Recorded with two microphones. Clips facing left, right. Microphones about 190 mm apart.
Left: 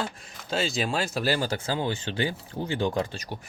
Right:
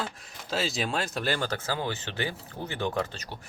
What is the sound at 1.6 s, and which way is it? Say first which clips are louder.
Speech: left 3 dB; 20° left (ahead or behind).